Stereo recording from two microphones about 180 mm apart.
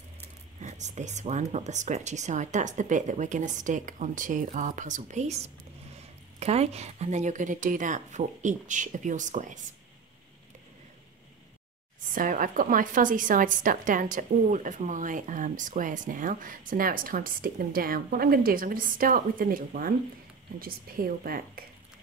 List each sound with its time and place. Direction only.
0.6 s a woman's voice: 40° right (ahead or behind)
12.1 s a woman's voice: 50° right (ahead or behind)